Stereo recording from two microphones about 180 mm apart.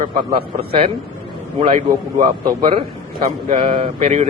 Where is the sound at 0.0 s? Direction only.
50° right (ahead or behind).